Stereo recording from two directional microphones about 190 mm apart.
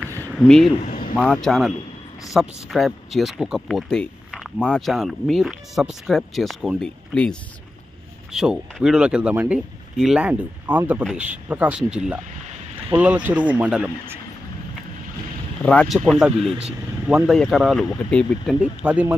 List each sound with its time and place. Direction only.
0.4 s speech: 5° left (ahead or behind)
0.8 s a sound: 45° left (ahead or behind)
1.1 s speech: centre (ahead or behind)
15.6 s speech: 5° left (ahead or behind)